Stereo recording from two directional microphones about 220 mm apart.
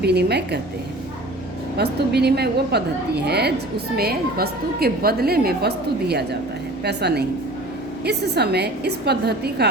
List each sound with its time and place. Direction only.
0.0 s a woman's voice: 50° right (ahead or behind)
1.8 s a woman's voice: 45° right (ahead or behind)